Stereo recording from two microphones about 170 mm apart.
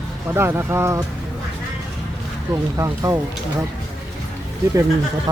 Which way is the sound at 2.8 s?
20° right (ahead or behind).